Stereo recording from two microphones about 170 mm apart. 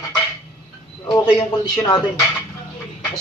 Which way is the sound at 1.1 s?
30° left (ahead or behind).